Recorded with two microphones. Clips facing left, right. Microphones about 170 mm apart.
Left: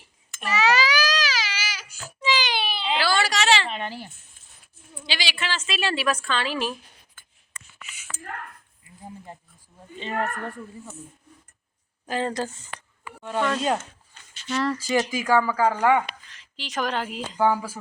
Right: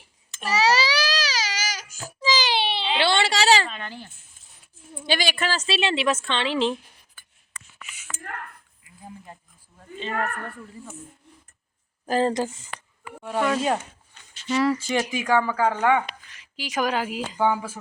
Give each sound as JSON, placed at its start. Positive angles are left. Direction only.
{"t": 0.3, "sound": "baby cry", "side_deg": -35}
{"t": 3.7, "sound": "a sound", "side_deg": 20}
{"t": 5.0, "sound": "a woman's voice", "side_deg": -50}
{"t": 8.8, "sound": "a sound", "side_deg": 25}
{"t": 10.0, "sound": "speech", "side_deg": 20}
{"t": 12.0, "sound": "speech", "side_deg": -40}
{"t": 12.3, "sound": "speech", "side_deg": -20}
{"t": 15.3, "sound": "a woman's voice", "side_deg": 10}
{"t": 16.3, "sound": "speech", "side_deg": -10}